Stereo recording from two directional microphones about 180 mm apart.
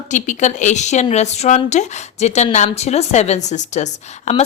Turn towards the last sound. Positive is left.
turn(degrees=40)  # may be behind; listen again after turning